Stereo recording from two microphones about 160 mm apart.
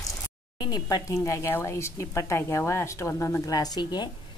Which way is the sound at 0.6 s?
25° left (ahead or behind).